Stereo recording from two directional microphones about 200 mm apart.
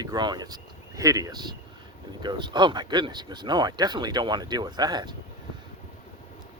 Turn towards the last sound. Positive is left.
turn(degrees=-20)  # may be behind; listen again after turning